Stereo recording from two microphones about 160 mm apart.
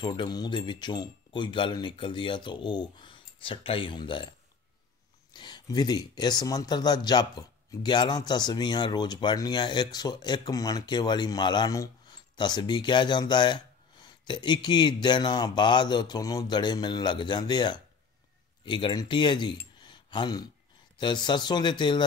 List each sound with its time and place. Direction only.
0.0 s speech: 30° left (ahead or behind)